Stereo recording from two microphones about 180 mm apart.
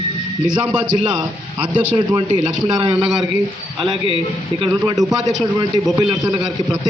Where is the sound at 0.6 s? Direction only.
25° right (ahead or behind).